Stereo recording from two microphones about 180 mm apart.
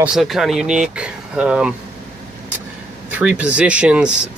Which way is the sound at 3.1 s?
5° right (ahead or behind).